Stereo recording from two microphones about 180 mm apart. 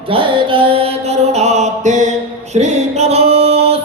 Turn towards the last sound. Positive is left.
turn(degrees=-35)  # may be behind; listen again after turning